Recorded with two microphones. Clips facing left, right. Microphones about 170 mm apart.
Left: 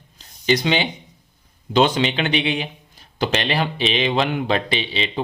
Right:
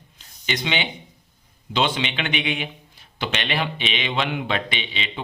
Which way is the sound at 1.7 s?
40° left (ahead or behind).